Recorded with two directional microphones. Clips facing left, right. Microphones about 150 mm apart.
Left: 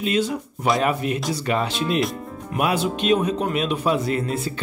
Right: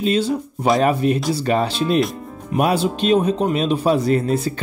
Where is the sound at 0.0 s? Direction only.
30° right (ahead or behind).